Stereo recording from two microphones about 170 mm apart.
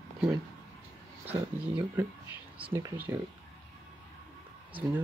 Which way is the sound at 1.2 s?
10° right (ahead or behind).